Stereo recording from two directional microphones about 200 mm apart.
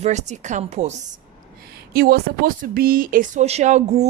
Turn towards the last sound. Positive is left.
turn(degrees=-35)  # may be behind; listen again after turning